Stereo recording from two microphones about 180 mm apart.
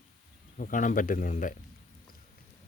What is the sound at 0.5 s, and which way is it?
Speech, 50° left (ahead or behind).